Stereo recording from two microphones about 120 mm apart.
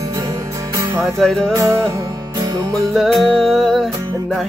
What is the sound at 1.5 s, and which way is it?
Music, 25° right (ahead or behind).